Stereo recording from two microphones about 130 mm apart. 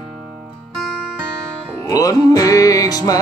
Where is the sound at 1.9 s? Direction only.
25° left (ahead or behind).